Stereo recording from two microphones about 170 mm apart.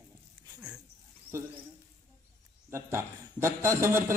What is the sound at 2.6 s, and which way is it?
A man's voice, 15° right (ahead or behind).